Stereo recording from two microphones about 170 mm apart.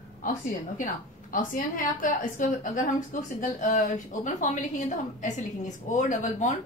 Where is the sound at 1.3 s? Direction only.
55° left (ahead or behind).